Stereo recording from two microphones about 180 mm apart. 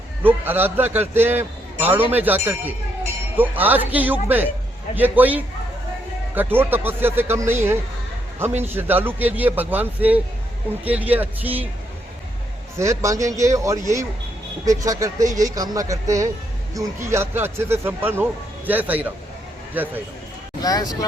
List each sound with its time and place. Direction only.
0.2 s a man's voice: 10° right (ahead or behind)
12.7 s a man's voice: 15° right (ahead or behind)
20.6 s speech: 20° left (ahead or behind)